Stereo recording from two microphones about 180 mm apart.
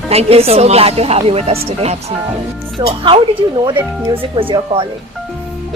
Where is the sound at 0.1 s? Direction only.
35° right (ahead or behind).